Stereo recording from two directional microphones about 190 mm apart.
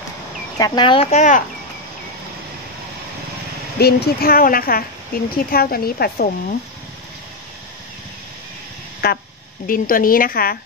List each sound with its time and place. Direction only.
0.6 s speech: 20° left (ahead or behind)
1.1 s speech: 40° left (ahead or behind)
3.8 s a woman's voice: 55° left (ahead or behind)
9.0 s a woman's voice: 55° left (ahead or behind)